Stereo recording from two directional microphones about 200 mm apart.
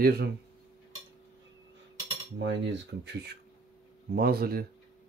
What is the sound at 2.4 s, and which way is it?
Speech, 65° right (ahead or behind).